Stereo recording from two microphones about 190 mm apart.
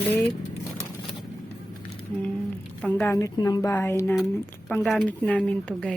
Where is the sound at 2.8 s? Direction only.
10° left (ahead or behind).